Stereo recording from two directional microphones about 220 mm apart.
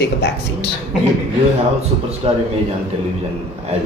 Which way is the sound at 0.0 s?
45° left (ahead or behind).